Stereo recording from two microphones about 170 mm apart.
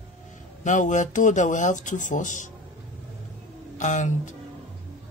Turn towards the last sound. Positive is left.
turn(degrees=45)  # may be behind; listen again after turning